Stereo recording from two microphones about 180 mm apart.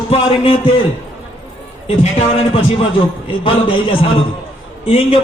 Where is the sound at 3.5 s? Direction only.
30° left (ahead or behind).